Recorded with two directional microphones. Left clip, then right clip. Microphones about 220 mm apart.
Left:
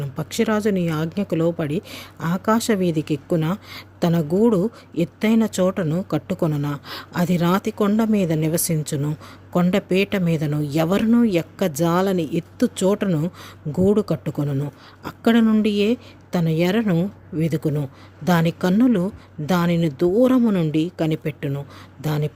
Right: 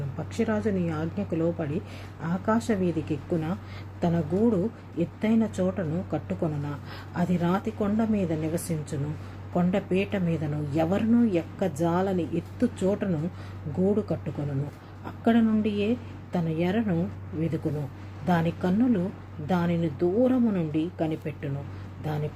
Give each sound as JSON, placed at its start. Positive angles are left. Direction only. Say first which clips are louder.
{"t": 0.2, "sound": "speech", "louder": "left 7 dB", "side_deg": 50}
{"t": 18.3, "sound": "speech", "louder": "left 6 dB", "side_deg": 55}